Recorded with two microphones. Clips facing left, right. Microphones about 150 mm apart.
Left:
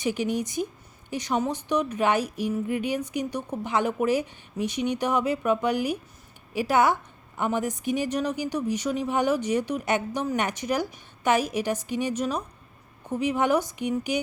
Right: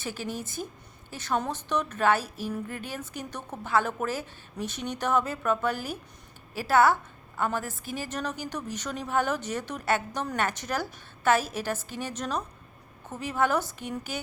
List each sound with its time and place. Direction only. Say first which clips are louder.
0.0 s a woman's voice: left 8 dB; 15° left (ahead or behind)